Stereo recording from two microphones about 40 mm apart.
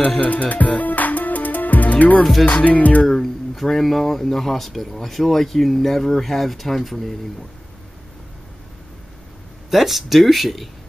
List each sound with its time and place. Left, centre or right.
0.2 s music: left
3.1 s speech: centre
9.7 s speech: centre